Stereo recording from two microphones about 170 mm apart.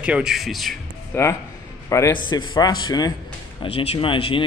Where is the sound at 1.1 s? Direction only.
15° left (ahead or behind).